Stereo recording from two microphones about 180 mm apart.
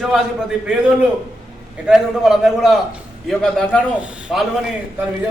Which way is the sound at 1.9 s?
5° right (ahead or behind).